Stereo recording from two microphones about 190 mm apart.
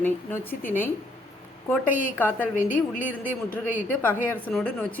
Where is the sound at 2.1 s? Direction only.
10° left (ahead or behind).